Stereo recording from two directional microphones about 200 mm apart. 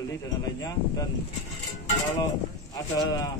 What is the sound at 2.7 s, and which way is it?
Speech, 20° left (ahead or behind).